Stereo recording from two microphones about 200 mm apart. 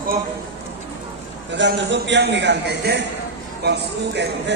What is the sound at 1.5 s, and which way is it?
A man's voice, 60° right (ahead or behind).